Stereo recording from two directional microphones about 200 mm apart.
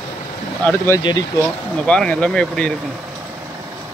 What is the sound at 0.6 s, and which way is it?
Speech, 15° left (ahead or behind).